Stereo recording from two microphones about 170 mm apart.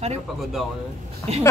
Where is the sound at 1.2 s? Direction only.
15° left (ahead or behind).